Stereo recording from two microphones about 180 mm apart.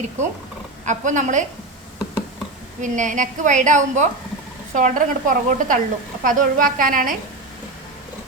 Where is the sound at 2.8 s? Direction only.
45° right (ahead or behind).